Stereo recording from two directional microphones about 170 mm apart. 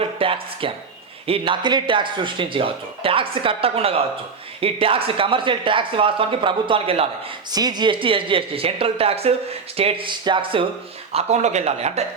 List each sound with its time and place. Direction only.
0.0 s a sound: 35° right (ahead or behind)
1.3 s speech: 30° right (ahead or behind)
7.5 s speech: 25° right (ahead or behind); by 12.0 s 40° right (ahead or behind)